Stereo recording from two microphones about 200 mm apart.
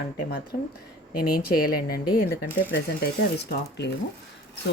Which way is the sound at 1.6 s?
50° left (ahead or behind).